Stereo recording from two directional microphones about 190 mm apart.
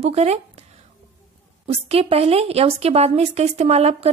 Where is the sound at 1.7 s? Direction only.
30° right (ahead or behind).